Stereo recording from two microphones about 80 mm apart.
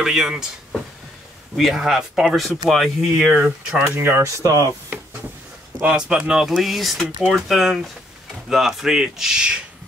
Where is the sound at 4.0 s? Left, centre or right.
Right.